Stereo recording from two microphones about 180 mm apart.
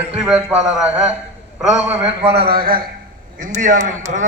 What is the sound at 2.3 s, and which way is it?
Speech, 60° right (ahead or behind).